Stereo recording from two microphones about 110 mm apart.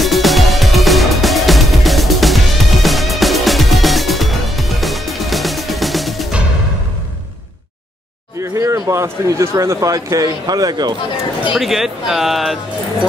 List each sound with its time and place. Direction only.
0.0 s music: centre (ahead or behind)
8.4 s speech: 30° right (ahead or behind)
11.5 s speech: centre (ahead or behind)